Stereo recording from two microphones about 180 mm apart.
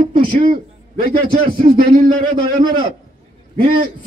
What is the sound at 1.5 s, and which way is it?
Speech, 55° right (ahead or behind).